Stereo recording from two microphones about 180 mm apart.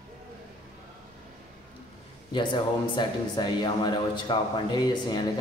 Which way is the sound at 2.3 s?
25° left (ahead or behind).